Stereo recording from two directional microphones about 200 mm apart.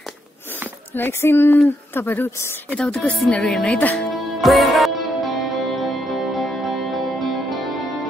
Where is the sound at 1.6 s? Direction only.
10° left (ahead or behind).